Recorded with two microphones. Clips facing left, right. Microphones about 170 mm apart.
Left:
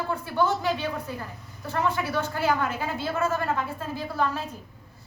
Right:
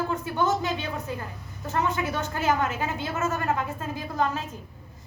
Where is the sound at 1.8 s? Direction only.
20° right (ahead or behind).